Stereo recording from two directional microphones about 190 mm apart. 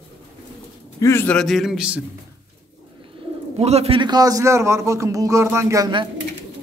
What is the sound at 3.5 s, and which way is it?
A man's voice, 35° right (ahead or behind).